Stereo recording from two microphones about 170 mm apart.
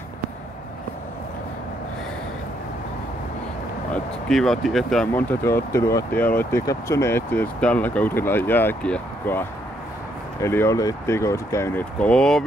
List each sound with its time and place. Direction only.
3.9 s speech: centre (ahead or behind)